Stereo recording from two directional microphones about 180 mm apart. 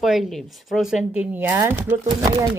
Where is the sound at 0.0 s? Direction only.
Centre (ahead or behind).